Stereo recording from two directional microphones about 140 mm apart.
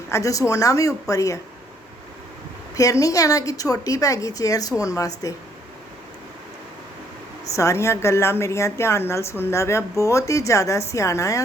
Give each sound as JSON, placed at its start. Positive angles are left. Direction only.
{"t": 0.1, "sound": "a woman's voice", "side_deg": 25}
{"t": 2.7, "sound": "a woman's voice", "side_deg": 25}
{"t": 7.5, "sound": "a woman's voice", "side_deg": 20}